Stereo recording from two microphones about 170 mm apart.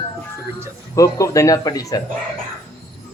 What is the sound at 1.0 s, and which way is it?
Speech, 20° left (ahead or behind).